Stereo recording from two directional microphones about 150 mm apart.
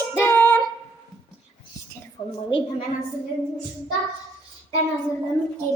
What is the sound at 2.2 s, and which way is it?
Speech, 35° left (ahead or behind).